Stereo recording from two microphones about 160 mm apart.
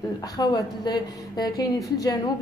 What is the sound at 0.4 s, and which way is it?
A woman's voice, 25° left (ahead or behind).